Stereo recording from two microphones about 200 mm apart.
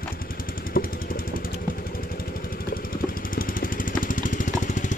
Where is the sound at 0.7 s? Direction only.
45° left (ahead or behind).